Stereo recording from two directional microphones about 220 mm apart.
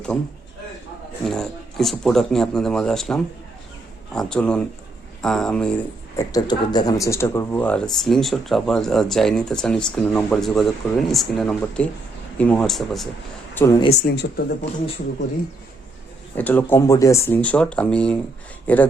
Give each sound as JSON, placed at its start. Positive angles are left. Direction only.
{"t": 1.2, "sound": "speech", "side_deg": 0}
{"t": 6.3, "sound": "speech", "side_deg": 20}
{"t": 14.0, "sound": "speech", "side_deg": 45}
{"t": 16.4, "sound": "speech", "side_deg": 10}